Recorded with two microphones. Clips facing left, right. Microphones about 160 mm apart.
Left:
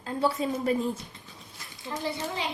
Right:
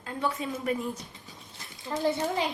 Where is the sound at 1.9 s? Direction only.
20° right (ahead or behind).